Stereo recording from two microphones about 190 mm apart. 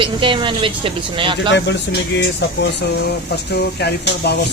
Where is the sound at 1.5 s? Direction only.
65° left (ahead or behind).